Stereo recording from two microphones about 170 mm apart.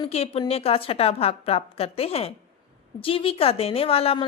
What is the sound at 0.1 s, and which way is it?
A woman's voice, 35° left (ahead or behind).